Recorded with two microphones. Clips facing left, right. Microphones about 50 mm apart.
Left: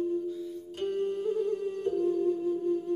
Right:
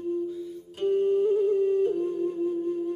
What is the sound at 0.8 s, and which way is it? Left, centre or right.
Music, centre.